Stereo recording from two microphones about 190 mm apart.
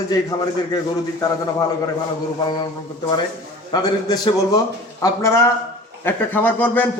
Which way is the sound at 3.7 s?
20° left (ahead or behind).